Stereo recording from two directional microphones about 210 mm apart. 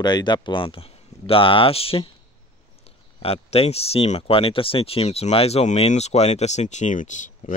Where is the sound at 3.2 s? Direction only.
30° left (ahead or behind).